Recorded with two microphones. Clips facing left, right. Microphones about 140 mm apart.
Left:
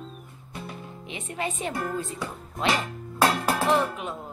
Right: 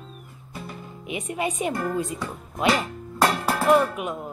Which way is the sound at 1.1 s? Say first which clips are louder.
Right 5 dB; 15° right (ahead or behind).